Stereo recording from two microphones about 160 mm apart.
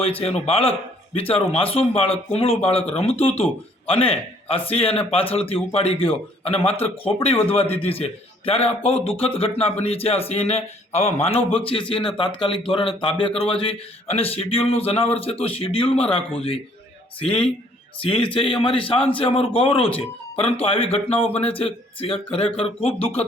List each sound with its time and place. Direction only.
0.0 s speech: 35° left (ahead or behind)